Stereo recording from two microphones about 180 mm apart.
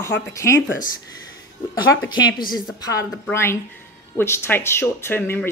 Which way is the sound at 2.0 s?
25° left (ahead or behind).